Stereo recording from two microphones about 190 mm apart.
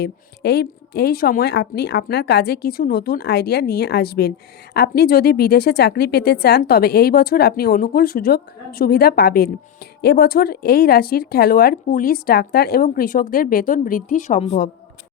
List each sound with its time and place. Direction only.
0.0 s a woman's voice: 60° left (ahead or behind); by 14.7 s 40° left (ahead or behind)